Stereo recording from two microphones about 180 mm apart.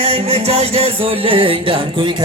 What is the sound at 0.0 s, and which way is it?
Music, 35° right (ahead or behind).